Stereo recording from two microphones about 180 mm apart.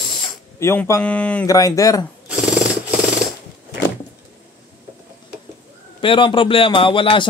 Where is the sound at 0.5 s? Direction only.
15° left (ahead or behind).